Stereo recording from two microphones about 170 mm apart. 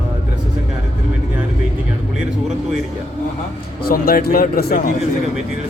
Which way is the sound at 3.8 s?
60° left (ahead or behind).